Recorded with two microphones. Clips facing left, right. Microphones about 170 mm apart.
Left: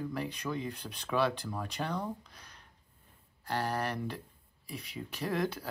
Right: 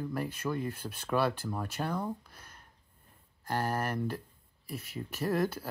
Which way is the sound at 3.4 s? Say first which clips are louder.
Right 1 dB; 45° right (ahead or behind).